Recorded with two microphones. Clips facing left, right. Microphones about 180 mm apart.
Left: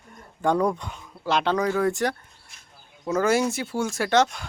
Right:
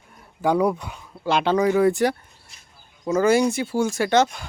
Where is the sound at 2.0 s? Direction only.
5° right (ahead or behind).